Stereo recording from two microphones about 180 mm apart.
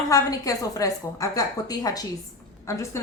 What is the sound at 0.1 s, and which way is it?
A woman's voice, 20° left (ahead or behind).